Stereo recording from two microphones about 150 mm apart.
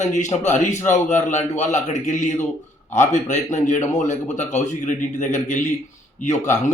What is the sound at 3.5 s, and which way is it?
A man's voice, 55° left (ahead or behind).